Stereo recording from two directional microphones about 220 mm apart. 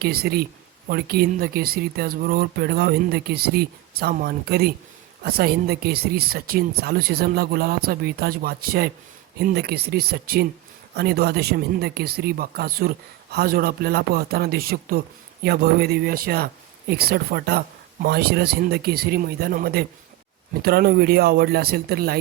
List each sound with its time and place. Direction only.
0.0 s speech: 45° right (ahead or behind)